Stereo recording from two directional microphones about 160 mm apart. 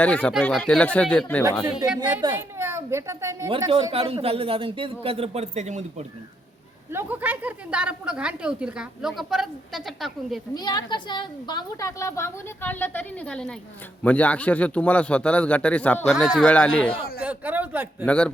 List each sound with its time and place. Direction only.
0.0 s speech: 10° left (ahead or behind)
2.2 s a woman's voice: 20° right (ahead or behind)
3.9 s a man's voice: 40° right (ahead or behind)
6.9 s a woman's voice: 10° right (ahead or behind)
10.5 s a woman's voice: 25° left (ahead or behind); by 16.9 s 10° left (ahead or behind)
17.2 s speech: 10° right (ahead or behind)
18.0 s speech: 5° left (ahead or behind)